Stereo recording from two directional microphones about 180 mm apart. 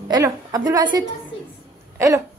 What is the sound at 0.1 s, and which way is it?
Speech, 20° right (ahead or behind).